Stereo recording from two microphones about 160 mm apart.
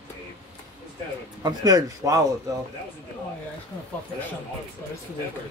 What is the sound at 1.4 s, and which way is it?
Speech, 25° right (ahead or behind).